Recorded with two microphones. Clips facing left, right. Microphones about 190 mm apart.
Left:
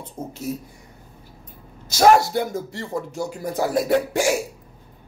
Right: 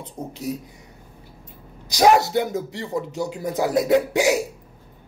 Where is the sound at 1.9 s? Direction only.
15° right (ahead or behind).